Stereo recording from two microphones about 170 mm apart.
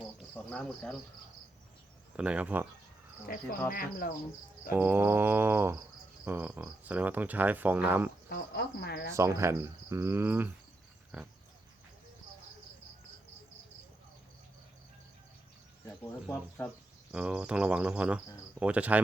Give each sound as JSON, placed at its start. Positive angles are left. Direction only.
{"t": 0.3, "sound": "speech", "side_deg": 5}
{"t": 2.1, "sound": "speech", "side_deg": -5}
{"t": 3.3, "sound": "speech", "side_deg": 60}
{"t": 4.7, "sound": "speech", "side_deg": -10}
{"t": 8.3, "sound": "speech", "side_deg": 75}
{"t": 9.1, "sound": "speech", "side_deg": -15}
{"t": 16.2, "sound": "speech", "side_deg": 10}
{"t": 17.1, "sound": "speech", "side_deg": -5}